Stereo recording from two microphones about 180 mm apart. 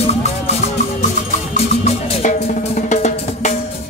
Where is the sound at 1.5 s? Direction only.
40° left (ahead or behind).